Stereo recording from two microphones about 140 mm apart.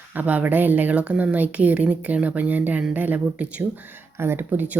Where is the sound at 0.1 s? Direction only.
10° right (ahead or behind).